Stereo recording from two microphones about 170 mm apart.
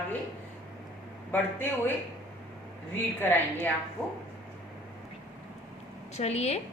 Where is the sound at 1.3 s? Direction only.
10° left (ahead or behind).